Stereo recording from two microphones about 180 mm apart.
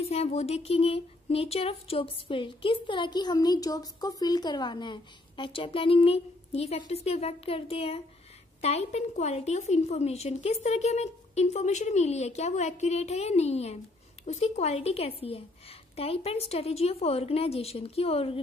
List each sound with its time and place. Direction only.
0.0 s speech: 35° left (ahead or behind)